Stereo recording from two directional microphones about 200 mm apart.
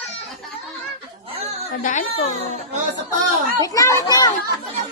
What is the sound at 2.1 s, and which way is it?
Baby cry, 30° left (ahead or behind).